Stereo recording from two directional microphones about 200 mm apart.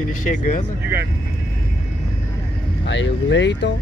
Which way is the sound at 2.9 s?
65° left (ahead or behind).